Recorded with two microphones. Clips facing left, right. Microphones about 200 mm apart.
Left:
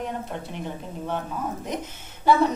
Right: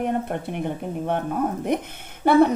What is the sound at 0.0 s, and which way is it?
A woman's voice, 60° right (ahead or behind).